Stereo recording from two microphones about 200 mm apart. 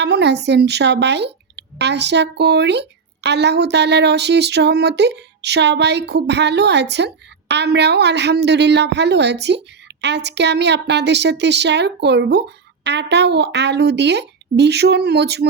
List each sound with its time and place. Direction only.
0.0 s speech: 60° right (ahead or behind)